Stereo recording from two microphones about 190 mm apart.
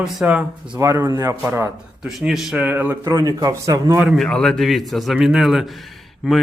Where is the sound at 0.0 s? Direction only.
5° right (ahead or behind).